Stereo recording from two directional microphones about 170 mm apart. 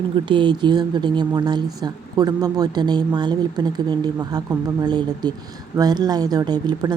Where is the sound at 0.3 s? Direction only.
30° right (ahead or behind).